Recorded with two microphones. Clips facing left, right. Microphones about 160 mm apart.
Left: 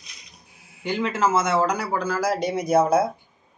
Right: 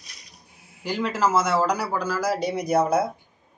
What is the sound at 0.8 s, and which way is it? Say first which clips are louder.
Speech: left 1 dB; centre (ahead or behind).